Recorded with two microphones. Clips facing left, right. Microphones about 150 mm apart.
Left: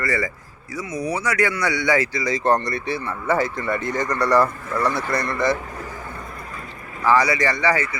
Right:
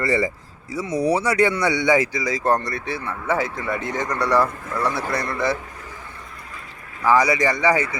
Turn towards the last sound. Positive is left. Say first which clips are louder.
# right 2 dB
turn(degrees=-20)  # may be behind; listen again after turning